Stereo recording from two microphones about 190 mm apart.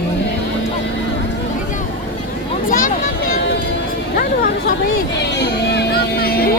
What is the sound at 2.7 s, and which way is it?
Vehicle, 45° left (ahead or behind).